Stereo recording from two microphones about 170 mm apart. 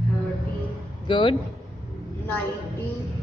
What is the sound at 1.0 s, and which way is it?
Speech, 30° left (ahead or behind).